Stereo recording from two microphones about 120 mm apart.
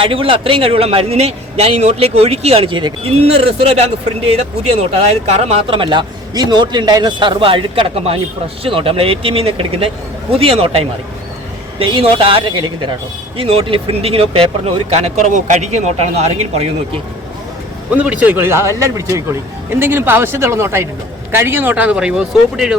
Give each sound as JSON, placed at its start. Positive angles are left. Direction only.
{"t": 0.0, "sound": "a man's voice", "side_deg": -45}
{"t": 17.9, "sound": "speech", "side_deg": -10}